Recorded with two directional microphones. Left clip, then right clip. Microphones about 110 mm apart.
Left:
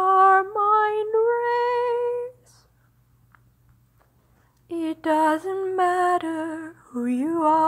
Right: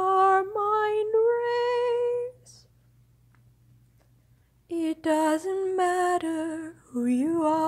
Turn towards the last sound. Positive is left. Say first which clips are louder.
# left 4 dB
turn(degrees=-30)  # may be behind; listen again after turning